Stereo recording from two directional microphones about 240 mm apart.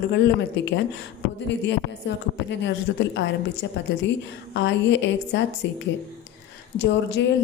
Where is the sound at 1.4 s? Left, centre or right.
Left.